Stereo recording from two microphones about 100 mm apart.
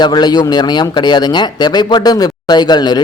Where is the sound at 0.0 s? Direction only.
45° left (ahead or behind).